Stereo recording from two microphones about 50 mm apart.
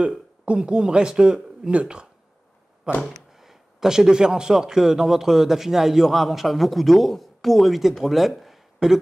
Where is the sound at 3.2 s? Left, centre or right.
Centre.